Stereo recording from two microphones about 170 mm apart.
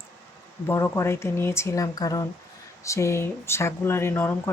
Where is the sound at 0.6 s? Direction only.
15° left (ahead or behind).